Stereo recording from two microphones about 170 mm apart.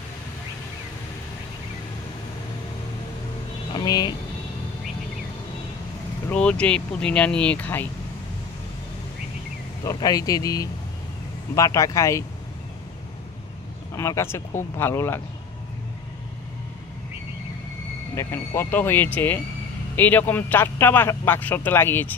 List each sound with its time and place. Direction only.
3.7 s vehicle: 25° left (ahead or behind)
6.2 s speech: 5° left (ahead or behind)
9.8 s a man's voice: 20° left (ahead or behind)
13.9 s speech: 15° left (ahead or behind)
18.1 s speech: 15° left (ahead or behind)